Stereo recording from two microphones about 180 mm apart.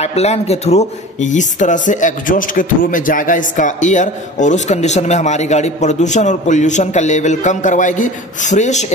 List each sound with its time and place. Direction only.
0.0 s speech: 35° left (ahead or behind)